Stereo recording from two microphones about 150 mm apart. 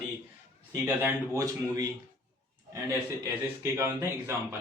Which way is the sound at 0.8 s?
15° right (ahead or behind).